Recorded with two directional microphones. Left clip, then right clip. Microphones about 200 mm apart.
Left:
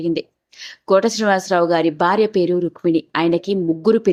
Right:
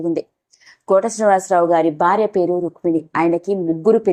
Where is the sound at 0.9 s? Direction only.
30° left (ahead or behind).